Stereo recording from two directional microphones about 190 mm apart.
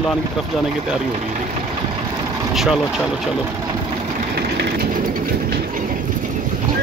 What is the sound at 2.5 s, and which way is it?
Speech, centre (ahead or behind).